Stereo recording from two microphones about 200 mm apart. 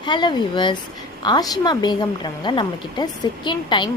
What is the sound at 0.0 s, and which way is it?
A woman's voice, 20° left (ahead or behind).